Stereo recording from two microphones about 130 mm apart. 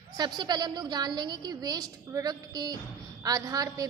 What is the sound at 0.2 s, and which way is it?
A woman's voice, 35° right (ahead or behind).